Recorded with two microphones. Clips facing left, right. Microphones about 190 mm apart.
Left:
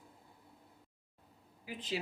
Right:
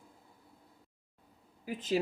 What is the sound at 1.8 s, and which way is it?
Speech, 45° right (ahead or behind).